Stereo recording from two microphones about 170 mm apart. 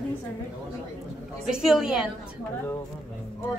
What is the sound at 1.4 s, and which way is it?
Speech, 5° right (ahead or behind).